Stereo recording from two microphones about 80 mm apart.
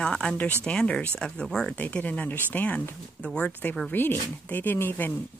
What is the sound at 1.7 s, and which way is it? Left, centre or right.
Speech, left.